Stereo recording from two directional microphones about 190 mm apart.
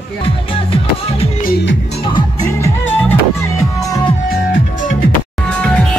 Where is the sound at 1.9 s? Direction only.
25° left (ahead or behind).